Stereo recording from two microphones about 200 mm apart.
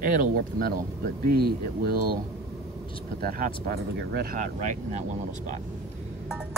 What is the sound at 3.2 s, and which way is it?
Speech, 45° right (ahead or behind).